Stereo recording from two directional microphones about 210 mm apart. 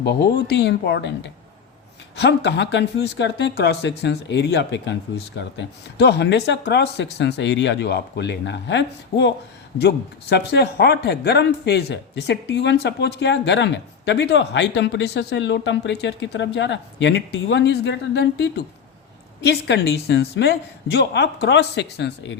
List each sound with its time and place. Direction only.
0.0 s a woman's voice: 50° left (ahead or behind)